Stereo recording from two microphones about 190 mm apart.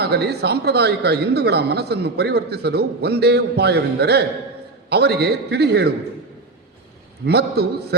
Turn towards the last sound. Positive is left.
turn(degrees=-60)  # may be behind; listen again after turning